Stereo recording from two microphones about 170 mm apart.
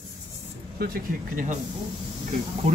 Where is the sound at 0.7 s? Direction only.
60° right (ahead or behind).